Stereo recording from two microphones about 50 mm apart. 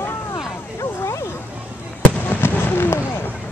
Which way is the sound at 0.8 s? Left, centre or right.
Left.